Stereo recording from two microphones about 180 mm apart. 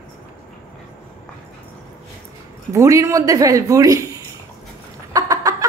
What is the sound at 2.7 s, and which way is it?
Speech, 15° right (ahead or behind).